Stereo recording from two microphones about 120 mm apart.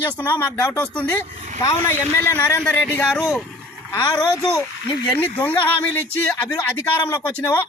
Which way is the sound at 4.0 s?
35° left (ahead or behind).